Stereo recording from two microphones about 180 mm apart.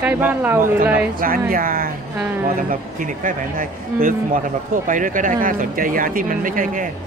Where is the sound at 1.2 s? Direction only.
50° right (ahead or behind).